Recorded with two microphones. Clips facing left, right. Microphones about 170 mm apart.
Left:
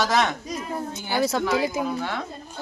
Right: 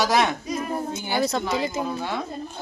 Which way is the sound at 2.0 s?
15° right (ahead or behind).